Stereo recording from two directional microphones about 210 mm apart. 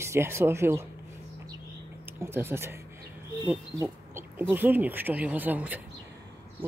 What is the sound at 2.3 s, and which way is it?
Speech, 10° right (ahead or behind).